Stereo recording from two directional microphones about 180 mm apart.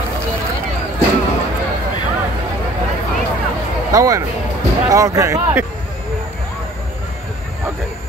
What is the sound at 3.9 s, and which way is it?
Speech, 20° right (ahead or behind).